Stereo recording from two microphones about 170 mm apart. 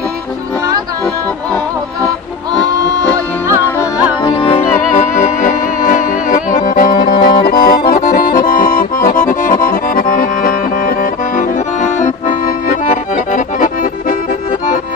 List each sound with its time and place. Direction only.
4.2 s music: 25° left (ahead or behind)
4.6 s music: 45° left (ahead or behind)
7.9 s accordion: 55° left (ahead or behind)